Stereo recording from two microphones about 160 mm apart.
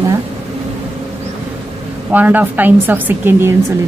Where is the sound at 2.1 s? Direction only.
10° right (ahead or behind).